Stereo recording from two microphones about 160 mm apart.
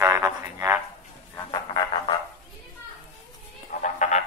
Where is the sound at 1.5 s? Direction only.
30° left (ahead or behind).